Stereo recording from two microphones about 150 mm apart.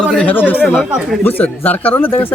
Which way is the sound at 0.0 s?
5° left (ahead or behind).